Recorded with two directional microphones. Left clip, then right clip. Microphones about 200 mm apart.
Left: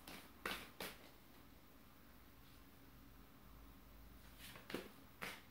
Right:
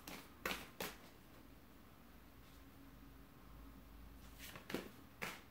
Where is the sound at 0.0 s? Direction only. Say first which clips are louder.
Right 2 dB; 20° right (ahead or behind).